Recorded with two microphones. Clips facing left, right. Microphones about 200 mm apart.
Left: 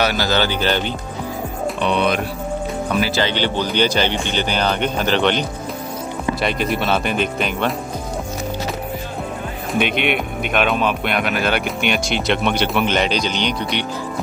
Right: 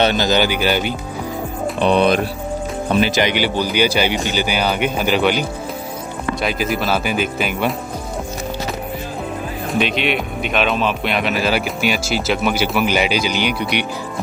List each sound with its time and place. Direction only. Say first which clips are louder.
0.0 s speech: right 3 dB; 20° right (ahead or behind)
1.8 s speech: right 5 dB; 35° right (ahead or behind)
2.9 s speech: right 4 dB; 20° right (ahead or behind); by 7.7 s 5° right (ahead or behind)
9.8 s speech: even; 55° left (ahead or behind)
10.7 s speech: even; centre (ahead or behind)